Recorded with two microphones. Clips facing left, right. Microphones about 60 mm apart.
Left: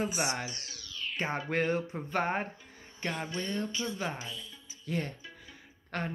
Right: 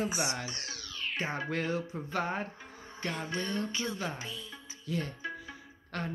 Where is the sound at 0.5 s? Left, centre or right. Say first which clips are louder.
Right 3 dB; right.